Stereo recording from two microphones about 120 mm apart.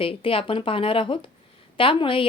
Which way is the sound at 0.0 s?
50° left (ahead or behind).